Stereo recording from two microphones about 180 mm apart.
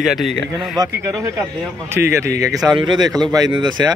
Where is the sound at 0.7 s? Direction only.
15° right (ahead or behind).